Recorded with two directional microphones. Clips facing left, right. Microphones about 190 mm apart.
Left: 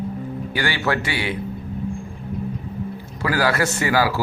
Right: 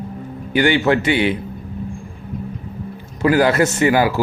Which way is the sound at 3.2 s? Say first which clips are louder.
Right 6 dB; 20° right (ahead or behind).